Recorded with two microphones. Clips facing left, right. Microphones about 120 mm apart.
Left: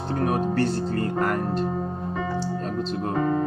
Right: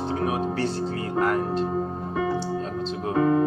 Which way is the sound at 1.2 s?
50° left (ahead or behind).